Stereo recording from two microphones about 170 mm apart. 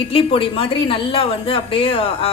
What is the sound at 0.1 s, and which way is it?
A woman's voice, 35° left (ahead or behind).